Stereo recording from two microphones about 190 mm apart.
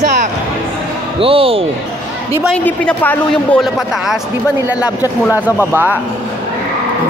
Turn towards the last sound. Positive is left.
turn(degrees=-10)  # may be behind; listen again after turning